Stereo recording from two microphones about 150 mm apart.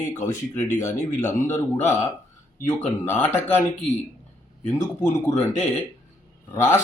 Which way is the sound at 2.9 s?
10° left (ahead or behind).